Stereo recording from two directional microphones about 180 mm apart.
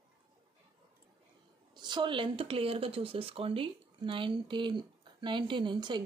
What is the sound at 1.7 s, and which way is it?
Speech, 25° right (ahead or behind).